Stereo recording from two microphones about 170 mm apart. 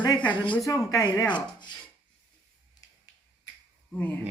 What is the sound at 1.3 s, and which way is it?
Rub, 25° left (ahead or behind).